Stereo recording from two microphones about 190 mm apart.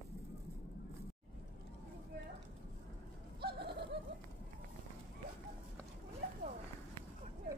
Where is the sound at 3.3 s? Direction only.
60° right (ahead or behind).